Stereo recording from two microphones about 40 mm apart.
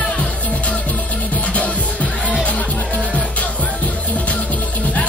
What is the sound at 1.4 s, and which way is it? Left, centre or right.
Music, left.